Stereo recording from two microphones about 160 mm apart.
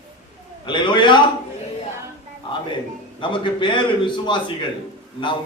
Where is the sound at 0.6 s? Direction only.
30° left (ahead or behind).